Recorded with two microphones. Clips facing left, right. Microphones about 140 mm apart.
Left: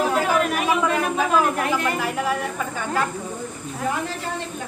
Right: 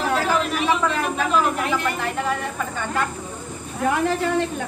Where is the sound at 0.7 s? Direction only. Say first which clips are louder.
Left 1 dB; 10° left (ahead or behind).